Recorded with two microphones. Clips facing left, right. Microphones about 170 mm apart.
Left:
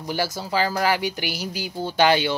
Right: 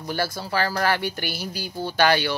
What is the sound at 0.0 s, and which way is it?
Speech, 15° left (ahead or behind).